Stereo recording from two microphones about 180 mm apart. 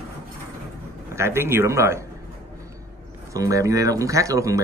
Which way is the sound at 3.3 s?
20° right (ahead or behind).